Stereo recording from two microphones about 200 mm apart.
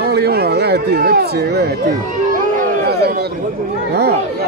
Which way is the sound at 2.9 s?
55° right (ahead or behind).